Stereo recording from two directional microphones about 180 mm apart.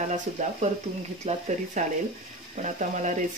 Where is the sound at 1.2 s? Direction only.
40° right (ahead or behind).